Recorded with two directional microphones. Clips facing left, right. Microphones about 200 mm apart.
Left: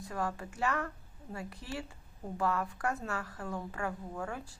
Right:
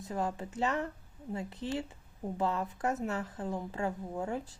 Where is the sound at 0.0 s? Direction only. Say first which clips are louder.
Right 2 dB; 20° right (ahead or behind).